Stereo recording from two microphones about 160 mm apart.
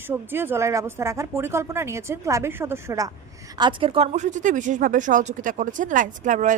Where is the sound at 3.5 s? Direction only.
30° right (ahead or behind); by 6.5 s 50° right (ahead or behind).